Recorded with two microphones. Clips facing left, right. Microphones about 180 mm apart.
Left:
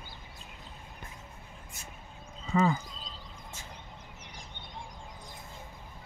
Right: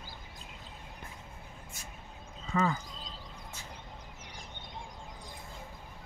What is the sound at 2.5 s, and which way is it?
Speech, 15° left (ahead or behind).